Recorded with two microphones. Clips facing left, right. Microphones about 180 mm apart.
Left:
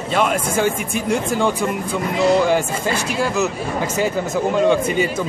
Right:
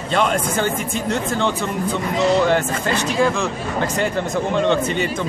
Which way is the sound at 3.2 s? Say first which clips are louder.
Even; 5° left (ahead or behind).